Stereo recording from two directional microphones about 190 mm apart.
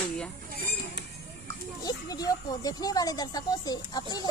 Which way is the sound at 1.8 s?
20° left (ahead or behind).